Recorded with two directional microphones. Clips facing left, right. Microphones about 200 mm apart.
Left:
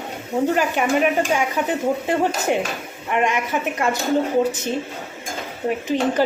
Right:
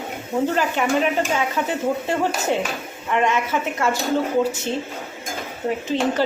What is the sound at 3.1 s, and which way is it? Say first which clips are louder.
A woman's voice: even; 15° left (ahead or behind).